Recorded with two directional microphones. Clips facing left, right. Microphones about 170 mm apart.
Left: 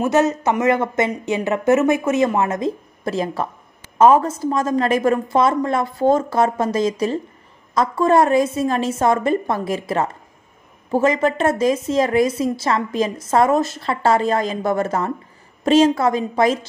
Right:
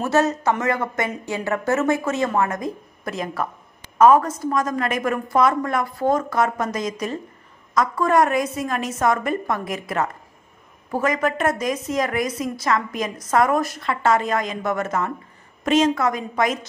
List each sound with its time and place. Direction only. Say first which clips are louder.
0.0 s a woman's voice: left 3 dB; 20° left (ahead or behind)